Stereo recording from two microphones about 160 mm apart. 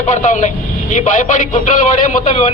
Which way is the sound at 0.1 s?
50° left (ahead or behind).